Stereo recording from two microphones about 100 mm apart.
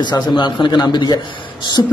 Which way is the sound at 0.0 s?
50° left (ahead or behind).